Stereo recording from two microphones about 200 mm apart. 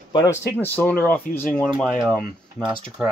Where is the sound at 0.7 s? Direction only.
10° left (ahead or behind).